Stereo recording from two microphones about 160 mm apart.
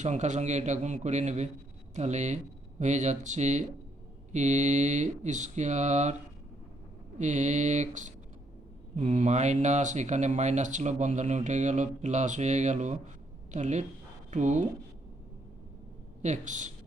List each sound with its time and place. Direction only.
0.0 s speech: 45° right (ahead or behind)
7.2 s speech: 50° right (ahead or behind)
16.2 s speech: 50° right (ahead or behind)